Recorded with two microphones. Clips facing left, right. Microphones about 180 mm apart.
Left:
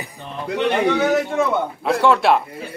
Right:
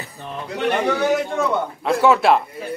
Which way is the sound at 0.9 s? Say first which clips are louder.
Left 2 dB; centre (ahead or behind).